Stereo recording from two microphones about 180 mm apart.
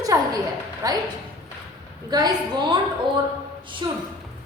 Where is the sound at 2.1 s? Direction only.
20° right (ahead or behind).